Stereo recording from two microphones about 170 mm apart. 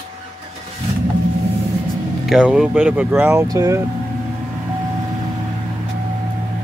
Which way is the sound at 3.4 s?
20° right (ahead or behind).